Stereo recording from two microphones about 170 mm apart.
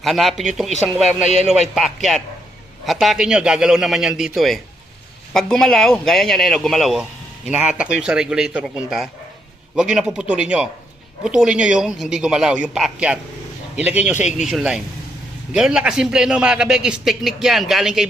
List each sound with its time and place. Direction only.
0.0 s a man's voice: centre (ahead or behind)
14.3 s a man's voice: 45° left (ahead or behind)
14.5 s a man's voice: 5° right (ahead or behind)